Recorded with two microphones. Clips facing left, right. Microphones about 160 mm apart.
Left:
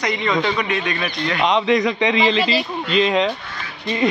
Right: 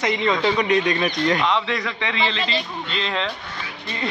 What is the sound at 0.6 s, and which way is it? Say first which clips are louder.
Speech: right 3 dB; 30° right (ahead or behind).